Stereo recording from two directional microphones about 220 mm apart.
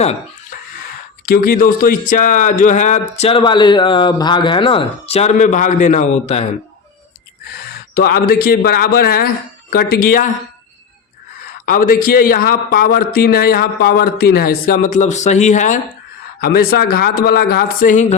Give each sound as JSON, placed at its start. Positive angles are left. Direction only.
{"t": 0.0, "sound": "dog", "side_deg": 30}
{"t": 1.2, "sound": "speech", "side_deg": 45}
{"t": 7.9, "sound": "speech", "side_deg": 45}
{"t": 11.6, "sound": "speech", "side_deg": 40}
{"t": 16.4, "sound": "speech", "side_deg": 45}